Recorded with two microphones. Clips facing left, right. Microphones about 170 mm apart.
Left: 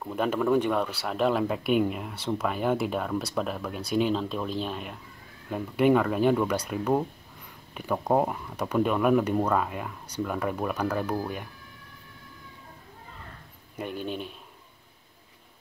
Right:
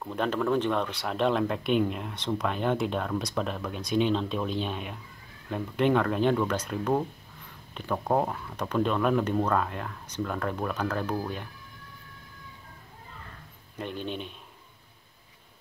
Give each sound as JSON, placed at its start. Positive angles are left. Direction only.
{"t": 0.0, "sound": "speech", "side_deg": 5}
{"t": 13.7, "sound": "speech", "side_deg": 10}